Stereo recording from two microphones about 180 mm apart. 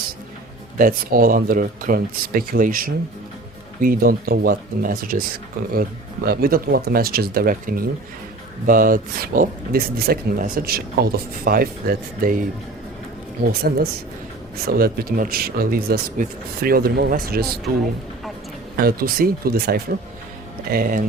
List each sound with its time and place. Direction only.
0.8 s speech: 50° right (ahead or behind)
6.2 s speech: 60° right (ahead or behind)
13.5 s speech: 60° right (ahead or behind)
18.8 s speech: 55° right (ahead or behind)